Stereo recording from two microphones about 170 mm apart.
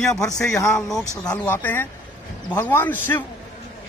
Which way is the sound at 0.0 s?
5° left (ahead or behind).